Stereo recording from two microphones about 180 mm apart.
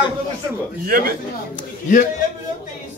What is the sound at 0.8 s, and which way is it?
Speech, 55° right (ahead or behind).